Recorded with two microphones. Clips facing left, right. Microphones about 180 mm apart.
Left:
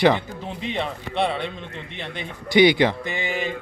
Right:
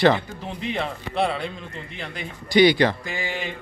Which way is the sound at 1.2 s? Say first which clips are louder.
Even; centre (ahead or behind).